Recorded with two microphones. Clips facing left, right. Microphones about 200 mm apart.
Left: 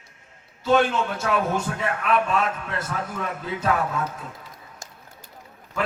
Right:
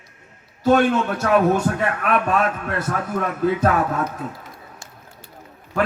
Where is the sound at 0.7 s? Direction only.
55° right (ahead or behind).